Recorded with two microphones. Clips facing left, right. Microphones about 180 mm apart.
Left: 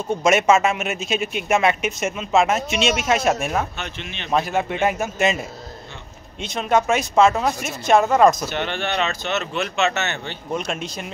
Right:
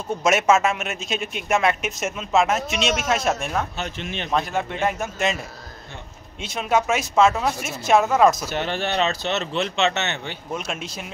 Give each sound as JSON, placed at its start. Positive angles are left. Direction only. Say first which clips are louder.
{"t": 0.1, "sound": "speech", "louder": "left 2 dB", "side_deg": 0}
{"t": 3.7, "sound": "speech", "louder": "right 3 dB", "side_deg": -40}
{"t": 4.3, "sound": "speech", "louder": "left 4 dB", "side_deg": 5}
{"t": 6.4, "sound": "speech", "louder": "left 2 dB", "side_deg": -5}
{"t": 8.5, "sound": "speech", "louder": "even", "side_deg": -35}
{"t": 10.2, "sound": "speech", "louder": "left 3 dB", "side_deg": -5}